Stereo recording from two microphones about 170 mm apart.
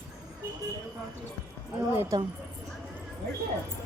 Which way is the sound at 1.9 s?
10° right (ahead or behind).